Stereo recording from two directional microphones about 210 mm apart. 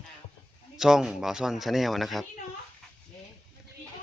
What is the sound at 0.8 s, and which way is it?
A woman's voice, 5° right (ahead or behind).